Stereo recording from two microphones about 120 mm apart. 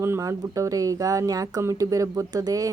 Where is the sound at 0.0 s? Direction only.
25° right (ahead or behind).